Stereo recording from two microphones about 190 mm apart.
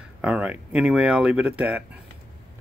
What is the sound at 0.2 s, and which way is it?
Speech, 5° right (ahead or behind).